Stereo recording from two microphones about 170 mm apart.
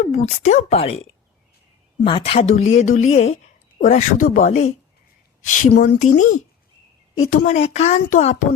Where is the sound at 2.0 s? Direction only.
35° left (ahead or behind); by 4.6 s 50° left (ahead or behind).